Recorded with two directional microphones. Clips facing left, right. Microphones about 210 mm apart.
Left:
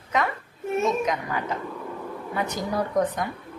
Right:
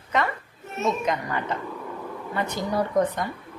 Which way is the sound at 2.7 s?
Centre (ahead or behind).